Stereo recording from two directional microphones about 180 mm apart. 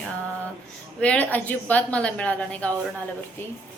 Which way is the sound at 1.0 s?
10° left (ahead or behind).